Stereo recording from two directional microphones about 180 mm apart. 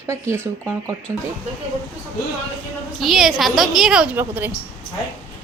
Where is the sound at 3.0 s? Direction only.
Centre (ahead or behind).